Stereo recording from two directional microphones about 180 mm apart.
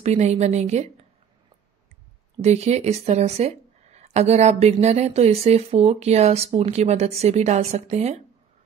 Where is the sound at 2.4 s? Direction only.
40° right (ahead or behind).